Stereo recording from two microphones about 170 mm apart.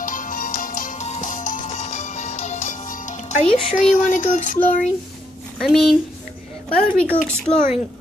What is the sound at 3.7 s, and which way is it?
Speech, 45° left (ahead or behind).